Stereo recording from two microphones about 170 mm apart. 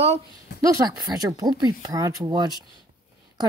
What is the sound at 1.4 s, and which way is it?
Speech, 25° right (ahead or behind).